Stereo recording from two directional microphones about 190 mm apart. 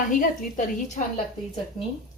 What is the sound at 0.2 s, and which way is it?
Speech, 45° left (ahead or behind).